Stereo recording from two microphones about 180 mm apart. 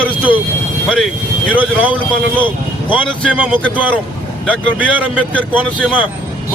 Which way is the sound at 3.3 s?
5° right (ahead or behind).